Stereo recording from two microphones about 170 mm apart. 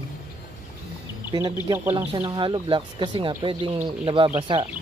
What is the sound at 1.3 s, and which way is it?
Speech, 20° right (ahead or behind).